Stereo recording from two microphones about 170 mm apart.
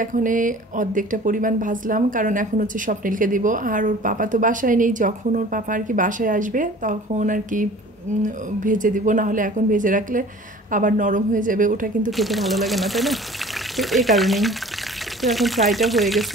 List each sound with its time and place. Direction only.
0.0 s speech: 50° right (ahead or behind)
12.1 s speech: centre (ahead or behind)